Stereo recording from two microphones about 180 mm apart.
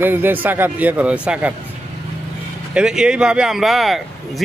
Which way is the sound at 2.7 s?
5° right (ahead or behind).